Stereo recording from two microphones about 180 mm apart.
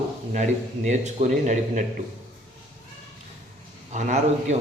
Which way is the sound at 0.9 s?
40° right (ahead or behind).